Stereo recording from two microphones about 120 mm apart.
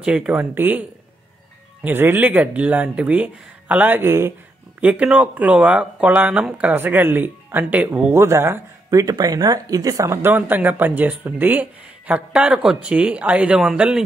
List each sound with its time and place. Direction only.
0.0 s speech: 10° right (ahead or behind)
1.9 s speech: 15° right (ahead or behind)
10.3 s speech: 15° right (ahead or behind)